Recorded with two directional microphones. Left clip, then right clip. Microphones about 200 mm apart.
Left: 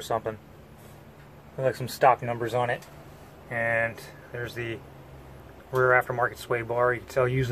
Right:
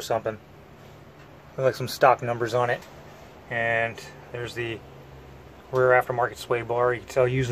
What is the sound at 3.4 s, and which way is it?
Speech, 15° right (ahead or behind).